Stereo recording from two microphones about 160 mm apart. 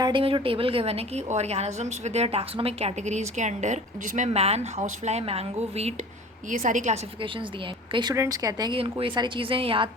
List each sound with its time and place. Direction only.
0.0 s a woman's voice: 35° right (ahead or behind)
6.5 s a woman's voice: 55° right (ahead or behind)
7.9 s a woman's voice: 20° right (ahead or behind)